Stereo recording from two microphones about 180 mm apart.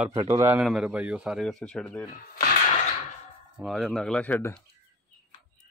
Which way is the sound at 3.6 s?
Centre (ahead or behind).